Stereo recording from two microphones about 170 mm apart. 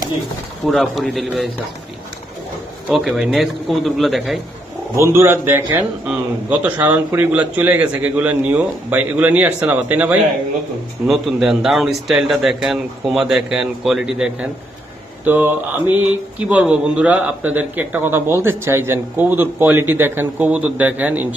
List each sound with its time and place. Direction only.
0.7 s speech: centre (ahead or behind)
2.9 s speech: 5° right (ahead or behind)
4.9 s speech: 15° right (ahead or behind)